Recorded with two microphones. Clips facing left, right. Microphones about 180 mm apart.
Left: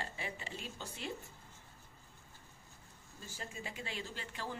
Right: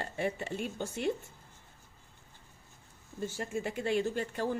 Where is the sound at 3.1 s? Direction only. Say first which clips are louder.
Right 12 dB; 60° right (ahead or behind).